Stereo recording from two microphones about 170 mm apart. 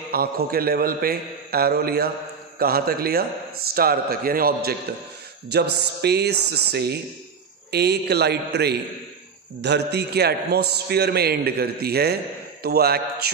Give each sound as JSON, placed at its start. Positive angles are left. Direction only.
{"t": 0.1, "sound": "a man's voice", "side_deg": -60}
{"t": 5.5, "sound": "a man's voice", "side_deg": -75}
{"t": 9.6, "sound": "a man's voice", "side_deg": -80}